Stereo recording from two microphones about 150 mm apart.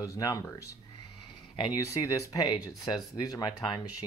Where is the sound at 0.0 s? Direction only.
20° left (ahead or behind).